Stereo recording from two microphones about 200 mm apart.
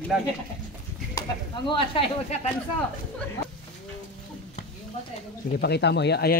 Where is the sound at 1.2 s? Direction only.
25° left (ahead or behind).